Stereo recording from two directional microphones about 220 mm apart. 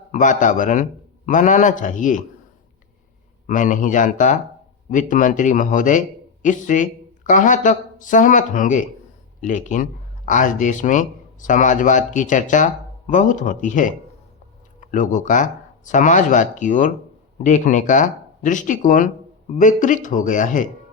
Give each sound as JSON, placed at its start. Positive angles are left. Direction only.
{"t": 0.1, "sound": "speech", "side_deg": 35}
{"t": 3.4, "sound": "speech", "side_deg": 35}